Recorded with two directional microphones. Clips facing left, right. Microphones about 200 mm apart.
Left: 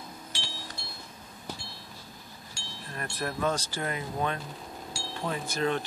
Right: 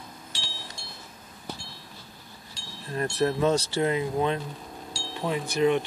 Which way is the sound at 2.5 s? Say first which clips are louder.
Right 8 dB; 25° right (ahead or behind).